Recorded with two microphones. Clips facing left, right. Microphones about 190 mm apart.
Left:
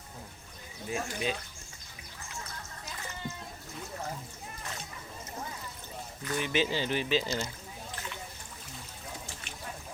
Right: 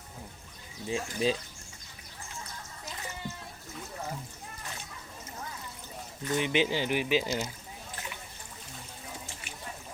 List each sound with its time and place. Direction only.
0.9 s speech: 30° right (ahead or behind)
6.2 s speech: 20° right (ahead or behind)